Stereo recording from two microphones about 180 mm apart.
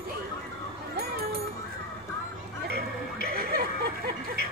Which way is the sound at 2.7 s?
60° right (ahead or behind).